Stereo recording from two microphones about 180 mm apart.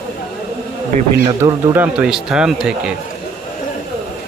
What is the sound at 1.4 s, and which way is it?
Speech, 20° right (ahead or behind).